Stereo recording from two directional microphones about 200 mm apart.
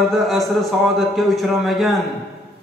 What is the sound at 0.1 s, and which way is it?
A man's voice, centre (ahead or behind).